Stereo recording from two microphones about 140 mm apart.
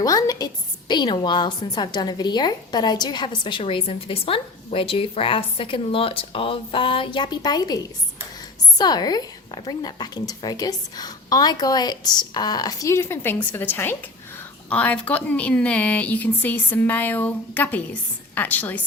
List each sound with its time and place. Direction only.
0.0 s a woman's voice: 25° left (ahead or behind)
8.8 s a woman's voice: 30° left (ahead or behind); by 18.8 s 10° left (ahead or behind)